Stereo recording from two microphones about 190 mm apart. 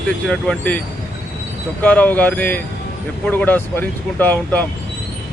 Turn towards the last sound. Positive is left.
turn(degrees=10)  # may be behind; listen again after turning